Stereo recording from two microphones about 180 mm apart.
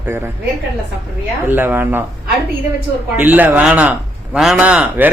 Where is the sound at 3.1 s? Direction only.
10° right (ahead or behind).